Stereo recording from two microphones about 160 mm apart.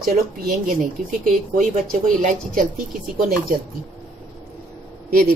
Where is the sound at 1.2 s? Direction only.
55° right (ahead or behind).